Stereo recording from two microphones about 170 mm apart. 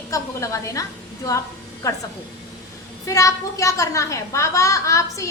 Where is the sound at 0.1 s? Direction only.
20° left (ahead or behind).